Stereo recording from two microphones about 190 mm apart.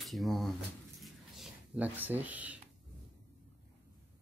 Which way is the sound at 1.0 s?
5° right (ahead or behind).